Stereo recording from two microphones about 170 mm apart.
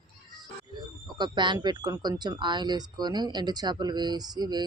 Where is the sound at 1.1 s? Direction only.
25° right (ahead or behind).